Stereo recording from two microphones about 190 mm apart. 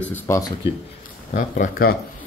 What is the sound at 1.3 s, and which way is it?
Speech, 45° left (ahead or behind).